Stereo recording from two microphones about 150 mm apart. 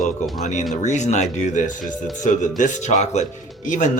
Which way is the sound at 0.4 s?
55° left (ahead or behind).